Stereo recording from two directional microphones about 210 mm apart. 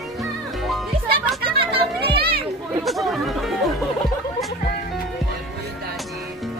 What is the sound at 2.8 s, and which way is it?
Speech, centre (ahead or behind).